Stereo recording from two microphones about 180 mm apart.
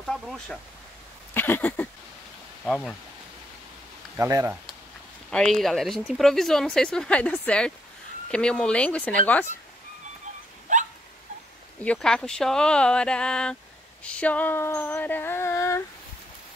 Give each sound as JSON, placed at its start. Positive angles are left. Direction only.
{"t": 0.0, "sound": "speech", "side_deg": 0}
{"t": 1.3, "sound": "a sound", "side_deg": 10}
{"t": 2.6, "sound": "speech", "side_deg": 5}
{"t": 4.2, "sound": "speech", "side_deg": -15}
{"t": 5.3, "sound": "speech", "side_deg": 5}
{"t": 10.7, "sound": "hiccup", "side_deg": -45}
{"t": 11.8, "sound": "speech", "side_deg": 5}
{"t": 14.0, "sound": "a sound", "side_deg": 5}